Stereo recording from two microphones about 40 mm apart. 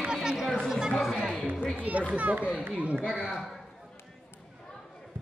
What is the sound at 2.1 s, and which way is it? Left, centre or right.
Speech, right.